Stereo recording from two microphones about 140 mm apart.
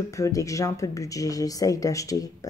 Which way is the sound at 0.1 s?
25° left (ahead or behind).